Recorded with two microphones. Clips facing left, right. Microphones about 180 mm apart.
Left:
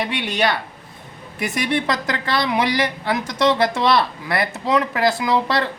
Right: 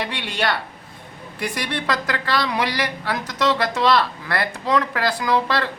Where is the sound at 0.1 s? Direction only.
20° left (ahead or behind).